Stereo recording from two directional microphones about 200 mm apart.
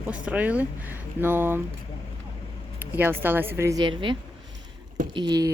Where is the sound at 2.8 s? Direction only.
10° right (ahead or behind).